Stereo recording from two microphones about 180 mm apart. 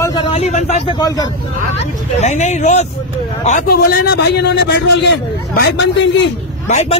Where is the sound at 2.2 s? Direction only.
40° left (ahead or behind).